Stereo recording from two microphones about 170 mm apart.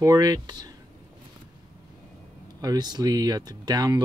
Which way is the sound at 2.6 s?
25° right (ahead or behind).